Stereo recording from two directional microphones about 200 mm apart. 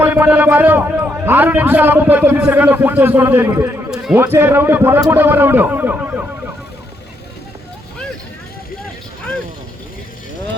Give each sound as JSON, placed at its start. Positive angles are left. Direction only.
{"t": 0.0, "sound": "a man's voice", "side_deg": -10}